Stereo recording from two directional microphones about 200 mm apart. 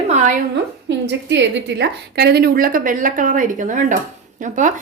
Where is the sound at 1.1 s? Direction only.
60° right (ahead or behind).